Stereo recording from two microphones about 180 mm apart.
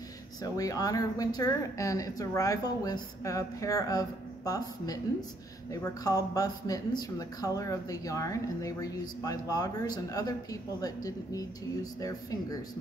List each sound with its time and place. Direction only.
0.4 s speech: 20° left (ahead or behind)